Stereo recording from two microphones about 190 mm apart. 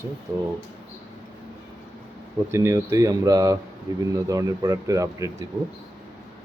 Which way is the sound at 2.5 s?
15° right (ahead or behind).